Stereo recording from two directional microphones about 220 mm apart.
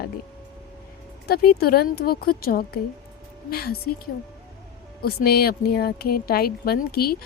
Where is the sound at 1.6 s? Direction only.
45° left (ahead or behind).